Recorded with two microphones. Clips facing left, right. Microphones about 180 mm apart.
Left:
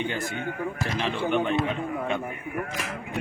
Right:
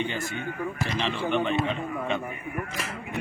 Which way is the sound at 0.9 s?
10° left (ahead or behind).